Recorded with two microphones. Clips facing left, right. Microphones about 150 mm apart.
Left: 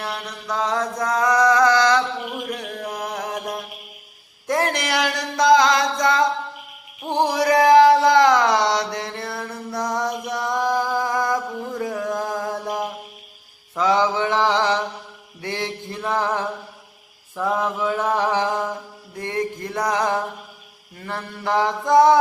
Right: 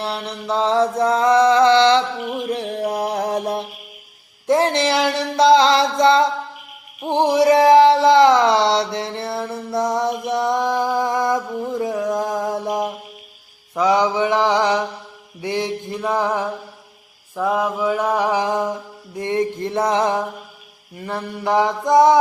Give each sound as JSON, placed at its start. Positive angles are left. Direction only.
{"t": 0.0, "sound": "mantra", "side_deg": -30}
{"t": 2.5, "sound": "music", "side_deg": -30}
{"t": 7.0, "sound": "a sound", "side_deg": -20}
{"t": 13.7, "sound": "mantra", "side_deg": -15}
{"t": 17.3, "sound": "a sound", "side_deg": -10}
{"t": 19.1, "sound": "music", "side_deg": -20}
{"t": 20.9, "sound": "mantra", "side_deg": -20}